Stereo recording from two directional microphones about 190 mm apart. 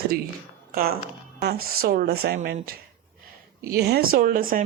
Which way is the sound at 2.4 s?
45° right (ahead or behind).